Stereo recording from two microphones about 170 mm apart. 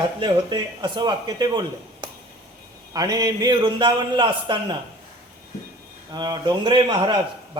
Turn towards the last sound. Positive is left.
turn(degrees=-25)  # may be behind; listen again after turning